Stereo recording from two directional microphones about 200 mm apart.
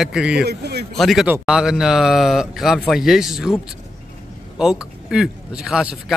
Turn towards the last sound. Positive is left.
turn(degrees=-5)  # may be behind; listen again after turning